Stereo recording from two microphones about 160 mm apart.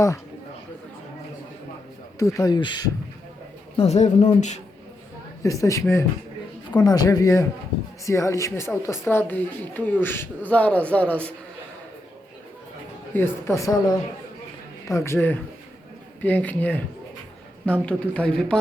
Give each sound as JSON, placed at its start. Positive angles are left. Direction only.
{"t": 2.1, "sound": "speech", "side_deg": 20}
{"t": 3.8, "sound": "speech", "side_deg": 45}
{"t": 5.4, "sound": "speech", "side_deg": 20}
{"t": 13.1, "sound": "speech", "side_deg": 15}